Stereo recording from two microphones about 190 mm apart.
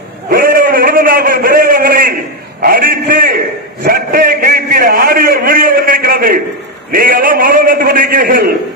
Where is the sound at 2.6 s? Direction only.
45° right (ahead or behind).